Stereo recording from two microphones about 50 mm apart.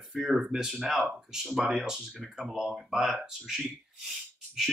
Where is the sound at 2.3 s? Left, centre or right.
Centre.